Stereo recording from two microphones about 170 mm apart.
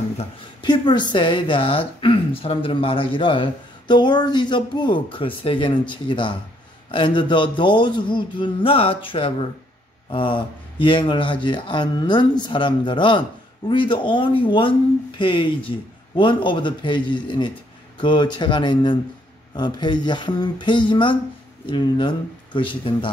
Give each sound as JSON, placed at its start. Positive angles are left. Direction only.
{"t": 0.2, "sound": "speech", "side_deg": 25}